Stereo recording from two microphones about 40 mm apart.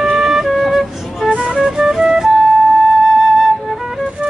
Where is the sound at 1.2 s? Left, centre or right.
Right.